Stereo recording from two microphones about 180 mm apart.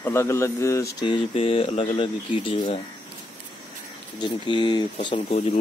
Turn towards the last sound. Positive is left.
turn(degrees=30)  # may be behind; listen again after turning